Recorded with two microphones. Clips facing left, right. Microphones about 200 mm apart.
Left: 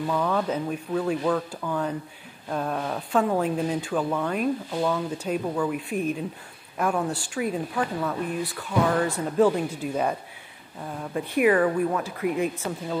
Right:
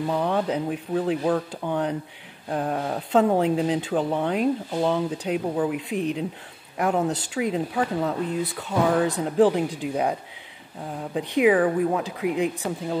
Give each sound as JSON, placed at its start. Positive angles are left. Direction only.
{"t": 0.0, "sound": "speech", "side_deg": -25}
{"t": 11.1, "sound": "speech", "side_deg": -15}